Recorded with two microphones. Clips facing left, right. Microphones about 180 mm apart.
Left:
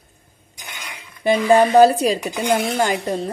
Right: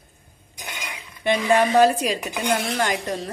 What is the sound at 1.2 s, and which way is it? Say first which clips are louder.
A woman's voice: left 5 dB; 35° left (ahead or behind).